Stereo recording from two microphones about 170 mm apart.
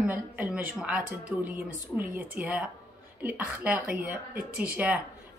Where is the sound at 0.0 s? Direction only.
10° right (ahead or behind).